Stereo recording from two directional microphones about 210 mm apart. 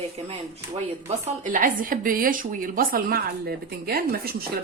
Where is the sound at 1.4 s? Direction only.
40° right (ahead or behind).